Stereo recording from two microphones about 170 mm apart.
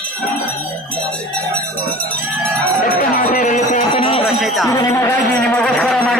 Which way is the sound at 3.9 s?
35° left (ahead or behind).